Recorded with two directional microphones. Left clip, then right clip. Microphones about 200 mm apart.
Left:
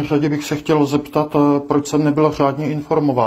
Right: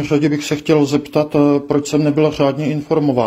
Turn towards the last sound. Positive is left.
turn(degrees=-45)  # may be behind; listen again after turning